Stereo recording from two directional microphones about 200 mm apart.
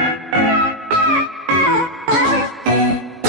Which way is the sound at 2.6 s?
Centre (ahead or behind).